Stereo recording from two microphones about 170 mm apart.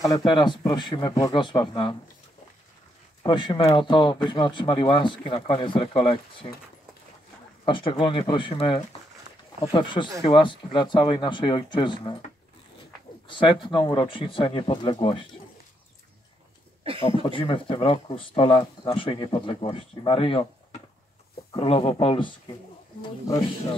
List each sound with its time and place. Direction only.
0.0 s speech: 25° left (ahead or behind)
3.2 s speech: 25° left (ahead or behind)
7.6 s speech: 30° left (ahead or behind)
13.3 s speech: 30° left (ahead or behind)
17.2 s speech: 30° left (ahead or behind)
21.5 s speech: 30° left (ahead or behind)